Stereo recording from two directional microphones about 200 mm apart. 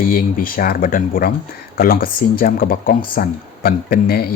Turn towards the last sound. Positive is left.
turn(degrees=50)  # may be behind; listen again after turning